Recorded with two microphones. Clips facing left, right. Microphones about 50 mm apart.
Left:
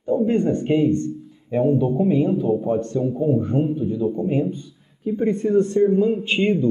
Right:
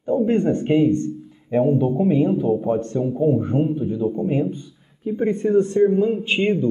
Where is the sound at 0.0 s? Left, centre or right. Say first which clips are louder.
Even; centre.